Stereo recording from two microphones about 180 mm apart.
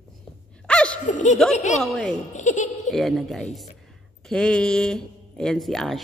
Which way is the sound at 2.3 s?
45° left (ahead or behind).